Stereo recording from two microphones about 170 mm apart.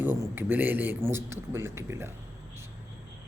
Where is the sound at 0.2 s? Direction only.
10° right (ahead or behind).